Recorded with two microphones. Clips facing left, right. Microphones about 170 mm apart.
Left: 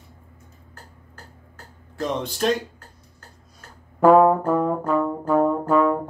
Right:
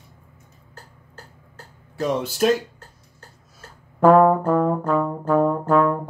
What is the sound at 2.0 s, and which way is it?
Speech, 5° right (ahead or behind).